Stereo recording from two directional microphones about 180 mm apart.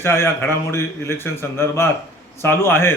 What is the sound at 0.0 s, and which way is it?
A man's voice, 15° left (ahead or behind).